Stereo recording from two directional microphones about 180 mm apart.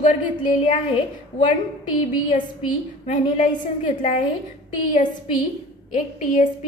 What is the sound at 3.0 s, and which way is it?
A woman's voice, 45° left (ahead or behind).